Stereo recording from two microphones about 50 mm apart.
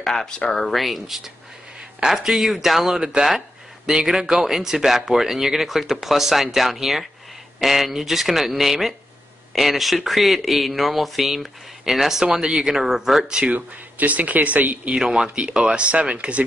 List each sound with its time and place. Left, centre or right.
0.0 s speech: centre
13.3 s speech: right
13.9 s speech: right
15.0 s speech: centre